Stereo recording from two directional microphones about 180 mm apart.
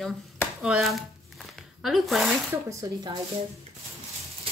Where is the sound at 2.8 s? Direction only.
20° right (ahead or behind).